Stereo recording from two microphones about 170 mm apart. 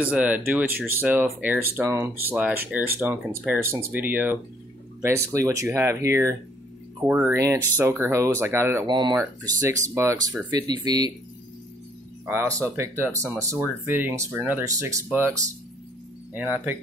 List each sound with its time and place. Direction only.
0.0 s speech: 10° right (ahead or behind)
8.8 s speech: 25° right (ahead or behind)
12.3 s speech: 15° right (ahead or behind)